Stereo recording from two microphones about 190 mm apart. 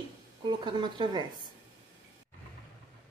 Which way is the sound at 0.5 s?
25° right (ahead or behind).